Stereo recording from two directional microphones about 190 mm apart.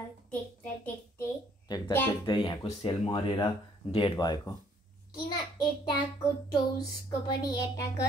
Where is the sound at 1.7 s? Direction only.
25° left (ahead or behind).